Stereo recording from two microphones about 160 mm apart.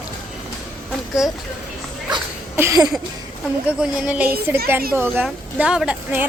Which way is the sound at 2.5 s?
20° right (ahead or behind).